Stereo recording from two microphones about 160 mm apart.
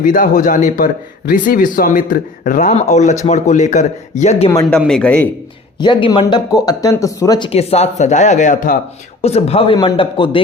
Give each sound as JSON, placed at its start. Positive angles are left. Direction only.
{"t": 0.0, "sound": "a man's voice", "side_deg": 55}
{"t": 4.9, "sound": "a man's voice", "side_deg": 5}
{"t": 5.8, "sound": "speech", "side_deg": 30}
{"t": 9.2, "sound": "speech", "side_deg": 40}